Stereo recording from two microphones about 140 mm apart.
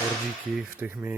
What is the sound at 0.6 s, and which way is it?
Speech, 10° right (ahead or behind).